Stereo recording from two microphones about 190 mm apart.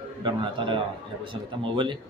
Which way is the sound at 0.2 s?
25° right (ahead or behind).